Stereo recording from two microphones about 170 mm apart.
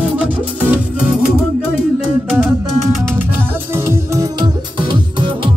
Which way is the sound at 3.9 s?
20° right (ahead or behind).